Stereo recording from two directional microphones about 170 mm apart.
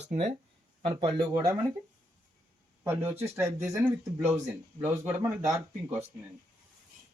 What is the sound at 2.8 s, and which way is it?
Speech, 10° right (ahead or behind).